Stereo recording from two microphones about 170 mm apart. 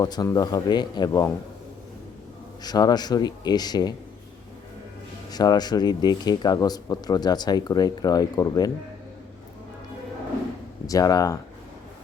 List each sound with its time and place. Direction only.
0.0 s speech: 20° left (ahead or behind)
2.6 s speech: 25° left (ahead or behind)
5.3 s speech: 25° left (ahead or behind)
10.8 s speech: 20° left (ahead or behind)